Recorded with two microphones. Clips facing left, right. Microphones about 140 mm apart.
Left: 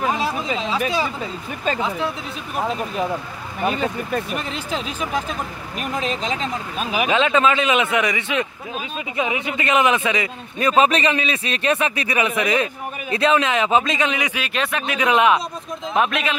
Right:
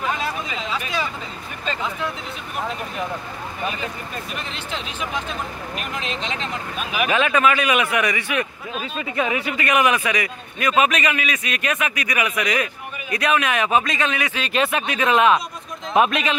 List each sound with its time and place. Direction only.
0.0 s speech: 30° left (ahead or behind)
4.6 s speech: 40° left (ahead or behind)
7.1 s speech: 20° left (ahead or behind)
14.4 s speech: centre (ahead or behind)
15.0 s a man's voice: 15° left (ahead or behind)
15.9 s speech: centre (ahead or behind)